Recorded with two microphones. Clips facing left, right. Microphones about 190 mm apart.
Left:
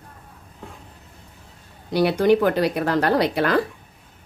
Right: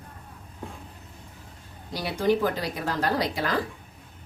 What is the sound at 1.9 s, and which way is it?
Speech, 70° left (ahead or behind).